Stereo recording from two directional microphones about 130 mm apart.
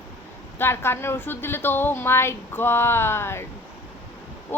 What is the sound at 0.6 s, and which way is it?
A woman's voice, 20° left (ahead or behind).